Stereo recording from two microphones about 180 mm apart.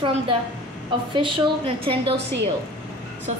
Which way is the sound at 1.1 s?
25° right (ahead or behind).